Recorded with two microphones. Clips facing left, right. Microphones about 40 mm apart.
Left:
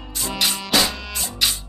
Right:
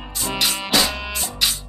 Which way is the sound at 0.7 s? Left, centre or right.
Centre.